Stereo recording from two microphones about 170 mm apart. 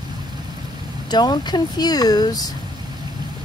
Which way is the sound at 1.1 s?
25° left (ahead or behind).